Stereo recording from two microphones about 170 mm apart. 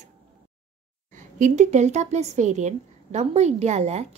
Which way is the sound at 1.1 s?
50° right (ahead or behind).